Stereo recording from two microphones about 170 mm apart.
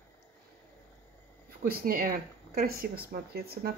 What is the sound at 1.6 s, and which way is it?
Speech, 60° right (ahead or behind).